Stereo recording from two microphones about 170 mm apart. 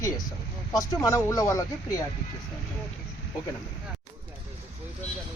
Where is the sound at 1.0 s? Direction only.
20° left (ahead or behind).